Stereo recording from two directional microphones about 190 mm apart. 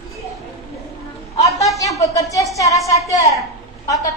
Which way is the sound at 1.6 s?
15° left (ahead or behind).